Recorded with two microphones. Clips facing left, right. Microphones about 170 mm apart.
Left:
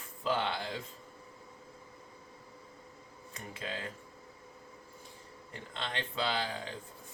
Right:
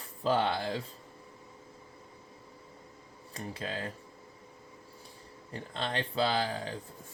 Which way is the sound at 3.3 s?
35° right (ahead or behind).